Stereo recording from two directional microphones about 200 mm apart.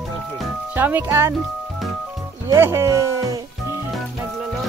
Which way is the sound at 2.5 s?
10° right (ahead or behind).